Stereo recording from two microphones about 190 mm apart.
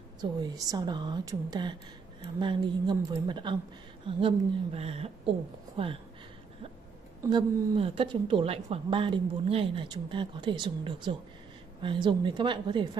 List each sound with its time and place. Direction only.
0.2 s a woman's voice: 20° right (ahead or behind)
7.2 s a woman's voice: 25° right (ahead or behind)